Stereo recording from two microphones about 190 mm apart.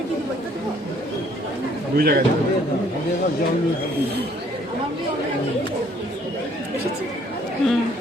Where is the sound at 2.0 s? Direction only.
55° right (ahead or behind).